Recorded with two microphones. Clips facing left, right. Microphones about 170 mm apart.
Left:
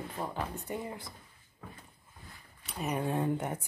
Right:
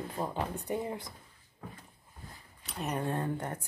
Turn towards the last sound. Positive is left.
turn(degrees=10)  # may be behind; listen again after turning